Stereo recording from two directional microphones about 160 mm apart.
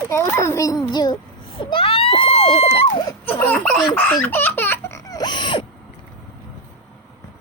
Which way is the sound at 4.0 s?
10° left (ahead or behind).